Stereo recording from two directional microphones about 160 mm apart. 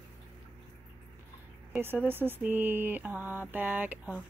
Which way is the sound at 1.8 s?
15° right (ahead or behind).